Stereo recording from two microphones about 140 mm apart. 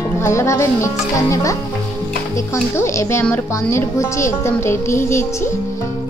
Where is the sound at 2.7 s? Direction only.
20° left (ahead or behind).